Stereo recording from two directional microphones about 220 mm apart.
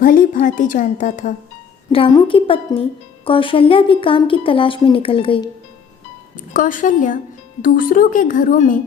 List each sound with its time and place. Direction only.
0.0 s a woman's voice: 40° left (ahead or behind)
1.9 s speech: 25° left (ahead or behind)
6.5 s a woman's voice: 40° left (ahead or behind)